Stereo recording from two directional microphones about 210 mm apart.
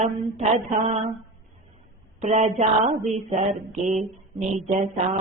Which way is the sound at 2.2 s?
30° right (ahead or behind).